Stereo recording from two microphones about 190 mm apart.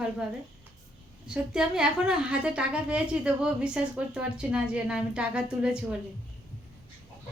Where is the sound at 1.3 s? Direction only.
5° right (ahead or behind).